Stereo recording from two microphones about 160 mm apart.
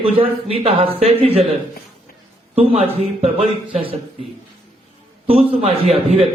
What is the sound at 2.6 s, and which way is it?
A man's voice, 35° right (ahead or behind).